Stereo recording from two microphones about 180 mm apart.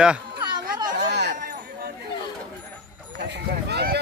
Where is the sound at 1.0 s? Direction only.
70° right (ahead or behind).